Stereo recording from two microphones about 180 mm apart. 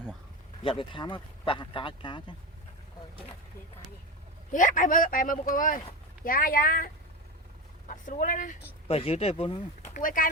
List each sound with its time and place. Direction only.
0.6 s speech: 30° left (ahead or behind)
4.5 s speech: 45° left (ahead or behind)
9.0 s speech: 30° left (ahead or behind)
9.9 s speech: 50° left (ahead or behind)